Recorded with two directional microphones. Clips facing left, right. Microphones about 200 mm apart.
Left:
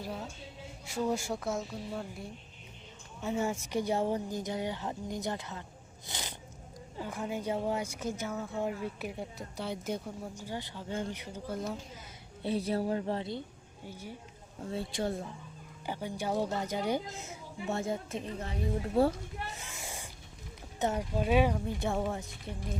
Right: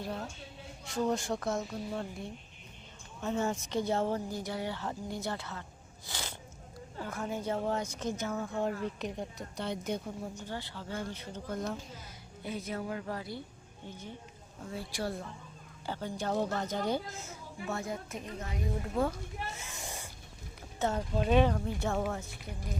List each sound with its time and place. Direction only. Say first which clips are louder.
0.0 s speech: right 1 dB; centre (ahead or behind)
3.2 s a woman's voice: even; 10° left (ahead or behind)
12.4 s speech: left 6 dB; 35° left (ahead or behind)
13.8 s a woman's voice: left 1 dB; 10° left (ahead or behind)
14.6 s speech: left 3 dB; 25° left (ahead or behind)
15.9 s a woman's voice: even; 10° left (ahead or behind); by 19.1 s 30° left (ahead or behind)
19.5 s a sound: even; 10° left (ahead or behind)
20.7 s a woman's voice: even; 15° left (ahead or behind)
22.5 s speech: left 4 dB; 25° left (ahead or behind)